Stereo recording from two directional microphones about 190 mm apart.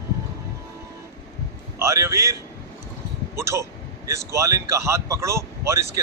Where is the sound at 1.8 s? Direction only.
15° right (ahead or behind).